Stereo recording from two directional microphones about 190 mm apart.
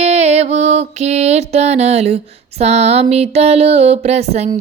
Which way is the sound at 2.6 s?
35° right (ahead or behind).